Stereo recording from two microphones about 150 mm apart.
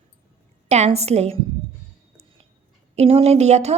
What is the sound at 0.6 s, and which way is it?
Speech, 45° right (ahead or behind).